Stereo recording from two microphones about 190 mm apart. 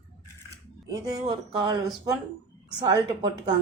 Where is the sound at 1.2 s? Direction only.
25° right (ahead or behind).